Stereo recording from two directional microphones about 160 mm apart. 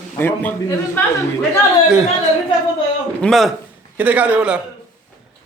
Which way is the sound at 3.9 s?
10° right (ahead or behind).